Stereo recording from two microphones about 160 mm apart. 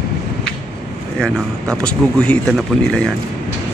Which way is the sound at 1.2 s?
5° left (ahead or behind).